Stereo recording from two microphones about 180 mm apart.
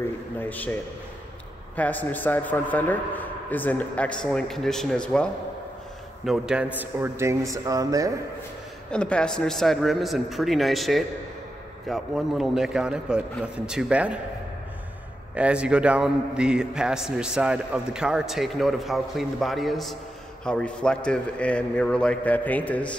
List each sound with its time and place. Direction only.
0.4 s a man's voice: 10° left (ahead or behind)
1.8 s a man's voice: 10° left (ahead or behind); by 8.1 s 20° right (ahead or behind)
8.9 s a man's voice: 5° left (ahead or behind)
15.3 s a man's voice: 5° right (ahead or behind)